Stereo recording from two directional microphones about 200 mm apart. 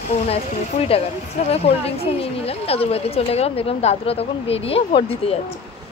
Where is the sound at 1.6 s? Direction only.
30° left (ahead or behind).